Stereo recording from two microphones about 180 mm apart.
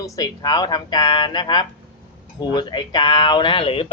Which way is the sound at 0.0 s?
20° left (ahead or behind).